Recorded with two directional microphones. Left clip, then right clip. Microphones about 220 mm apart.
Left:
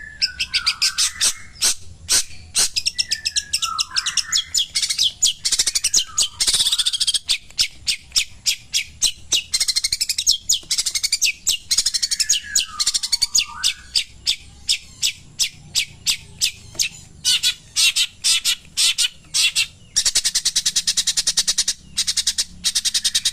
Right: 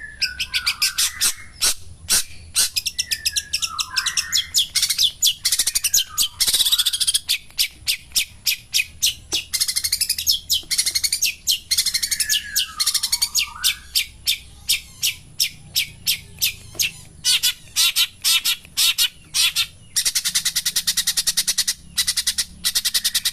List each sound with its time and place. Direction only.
0.2 s bird: 20° right (ahead or behind)
9.3 s bird: 20° left (ahead or behind); by 16.9 s centre (ahead or behind)
17.2 s squawk: 35° right (ahead or behind)
17.7 s bird: 15° right (ahead or behind)